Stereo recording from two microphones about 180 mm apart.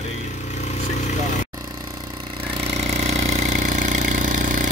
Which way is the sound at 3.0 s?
35° right (ahead or behind).